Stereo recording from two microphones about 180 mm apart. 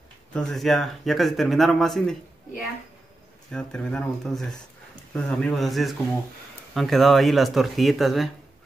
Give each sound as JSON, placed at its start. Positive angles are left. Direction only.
{"t": 0.3, "sound": "speech", "side_deg": 5}